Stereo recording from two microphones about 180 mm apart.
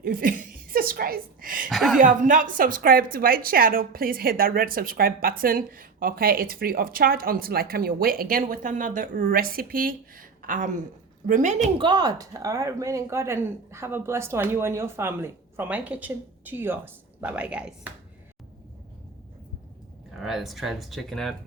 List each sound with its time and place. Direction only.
0.0 s speech: 50° right (ahead or behind)
1.7 s speech: centre (ahead or behind)
2.0 s a woman's voice: 45° right (ahead or behind)
11.8 s a woman's voice: 25° right (ahead or behind); by 17.9 s 5° right (ahead or behind)
20.1 s speech: centre (ahead or behind)